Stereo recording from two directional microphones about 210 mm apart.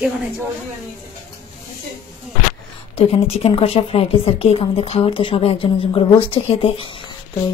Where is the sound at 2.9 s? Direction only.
30° left (ahead or behind).